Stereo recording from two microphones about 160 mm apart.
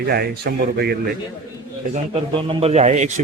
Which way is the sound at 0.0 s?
75° right (ahead or behind).